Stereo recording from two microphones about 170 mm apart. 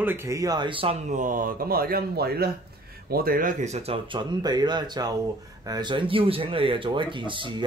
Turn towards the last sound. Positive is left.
turn(degrees=-30)  # may be behind; listen again after turning